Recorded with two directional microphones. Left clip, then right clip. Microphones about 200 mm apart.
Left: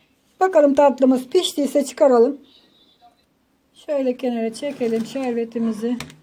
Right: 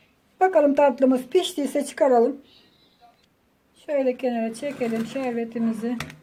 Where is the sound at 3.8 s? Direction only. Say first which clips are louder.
Left 1 dB; 30° left (ahead or behind).